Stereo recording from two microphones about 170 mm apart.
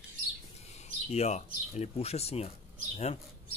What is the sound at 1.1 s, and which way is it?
Speech, 40° left (ahead or behind).